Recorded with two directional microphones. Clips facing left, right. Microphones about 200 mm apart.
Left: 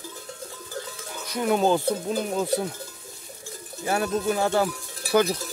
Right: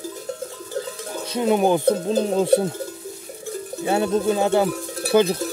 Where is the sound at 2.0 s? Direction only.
30° right (ahead or behind).